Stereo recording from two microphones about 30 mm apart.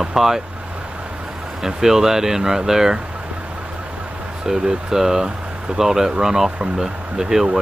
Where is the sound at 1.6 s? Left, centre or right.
Centre.